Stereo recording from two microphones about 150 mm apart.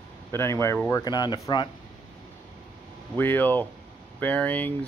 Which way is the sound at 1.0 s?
30° left (ahead or behind).